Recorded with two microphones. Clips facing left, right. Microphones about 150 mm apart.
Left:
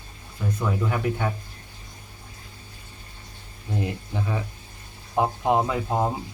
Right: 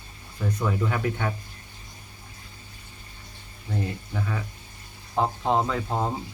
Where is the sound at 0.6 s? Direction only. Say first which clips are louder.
Left 1 dB; 5° left (ahead or behind).